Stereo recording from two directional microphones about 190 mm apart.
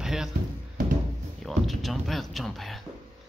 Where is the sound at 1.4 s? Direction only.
Centre (ahead or behind).